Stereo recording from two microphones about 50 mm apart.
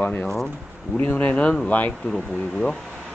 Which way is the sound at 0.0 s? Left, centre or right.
Left.